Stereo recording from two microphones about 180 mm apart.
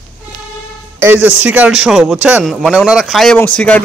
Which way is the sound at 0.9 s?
10° right (ahead or behind).